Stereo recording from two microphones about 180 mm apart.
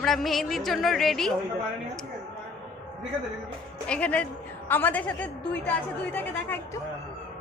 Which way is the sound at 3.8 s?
5° left (ahead or behind).